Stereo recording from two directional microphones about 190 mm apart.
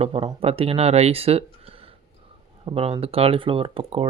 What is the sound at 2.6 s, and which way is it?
Speech, 30° right (ahead or behind).